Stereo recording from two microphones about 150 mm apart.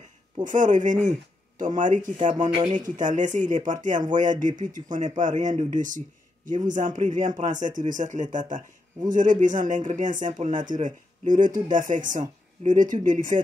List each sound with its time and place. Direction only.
0.4 s speech: 55° right (ahead or behind)